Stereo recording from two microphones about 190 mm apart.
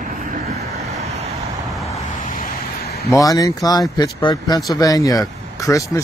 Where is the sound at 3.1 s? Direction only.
20° left (ahead or behind).